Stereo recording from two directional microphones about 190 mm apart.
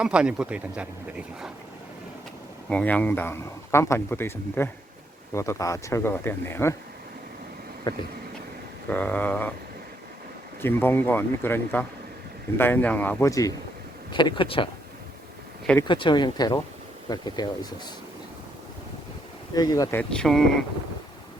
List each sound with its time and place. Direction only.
0.0 s speech: 5° right (ahead or behind)
2.6 s speech: 5° left (ahead or behind)
7.9 s speech: 25° left (ahead or behind)
8.9 s speech: 10° left (ahead or behind)
10.6 s speech: 10° left (ahead or behind); by 14.7 s 25° left (ahead or behind)
15.9 s speech: 25° left (ahead or behind)
19.5 s speech: 20° left (ahead or behind); by 20.4 s 5° left (ahead or behind)